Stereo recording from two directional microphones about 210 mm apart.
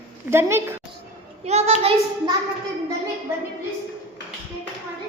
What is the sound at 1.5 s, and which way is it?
Child singing, 30° right (ahead or behind).